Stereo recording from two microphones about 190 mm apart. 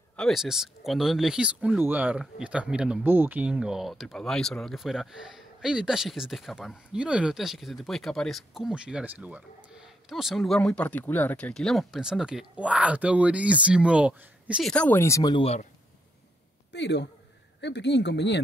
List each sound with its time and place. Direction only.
0.1 s speech: centre (ahead or behind)
14.7 s speech: 10° left (ahead or behind)
16.7 s speech: 65° left (ahead or behind)